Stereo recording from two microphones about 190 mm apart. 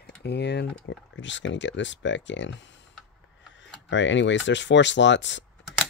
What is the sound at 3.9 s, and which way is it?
Speech, 75° left (ahead or behind).